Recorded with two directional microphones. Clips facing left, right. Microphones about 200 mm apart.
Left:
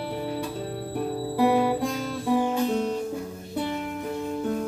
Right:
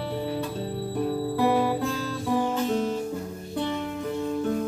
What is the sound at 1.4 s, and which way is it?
Music, 10° left (ahead or behind).